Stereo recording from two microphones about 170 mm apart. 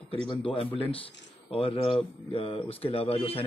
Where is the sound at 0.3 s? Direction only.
30° left (ahead or behind).